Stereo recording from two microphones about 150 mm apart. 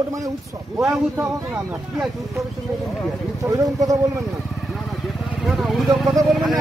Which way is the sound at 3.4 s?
25° right (ahead or behind).